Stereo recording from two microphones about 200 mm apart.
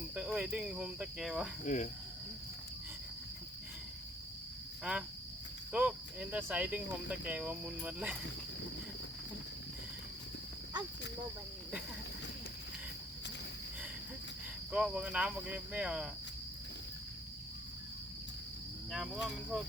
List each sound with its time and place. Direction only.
0.2 s speech: 5° right (ahead or behind)
1.6 s cricket: 40° left (ahead or behind)
4.8 s cricket: 5° right (ahead or behind)
14.7 s speech: 5° right (ahead or behind)
18.9 s speech: centre (ahead or behind)